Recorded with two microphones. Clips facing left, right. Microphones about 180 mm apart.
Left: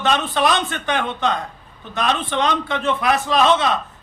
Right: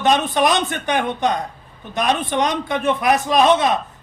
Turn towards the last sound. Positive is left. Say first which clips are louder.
# right 2 dB
turn(degrees=-15)  # may be behind; listen again after turning